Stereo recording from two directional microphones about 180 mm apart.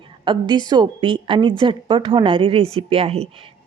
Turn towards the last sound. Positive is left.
turn(degrees=-35)  # may be behind; listen again after turning